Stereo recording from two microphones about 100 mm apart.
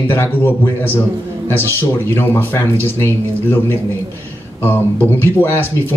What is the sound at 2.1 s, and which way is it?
Speech, 20° left (ahead or behind).